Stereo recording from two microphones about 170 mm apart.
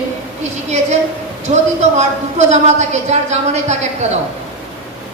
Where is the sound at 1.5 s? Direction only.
40° right (ahead or behind).